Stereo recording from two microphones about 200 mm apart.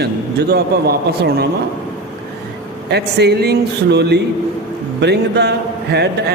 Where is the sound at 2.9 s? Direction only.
55° right (ahead or behind).